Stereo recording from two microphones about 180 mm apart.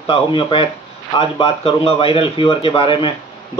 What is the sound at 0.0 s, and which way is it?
Speech, 30° left (ahead or behind).